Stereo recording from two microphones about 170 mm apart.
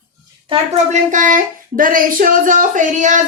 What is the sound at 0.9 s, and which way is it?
Speech, 50° right (ahead or behind).